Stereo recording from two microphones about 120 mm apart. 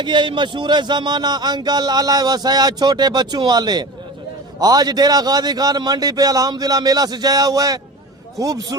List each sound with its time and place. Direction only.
0.0 s music: 40° right (ahead or behind)
8.4 s a man's voice: 30° right (ahead or behind)